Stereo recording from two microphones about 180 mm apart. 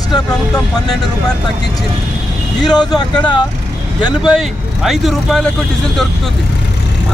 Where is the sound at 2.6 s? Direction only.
20° left (ahead or behind).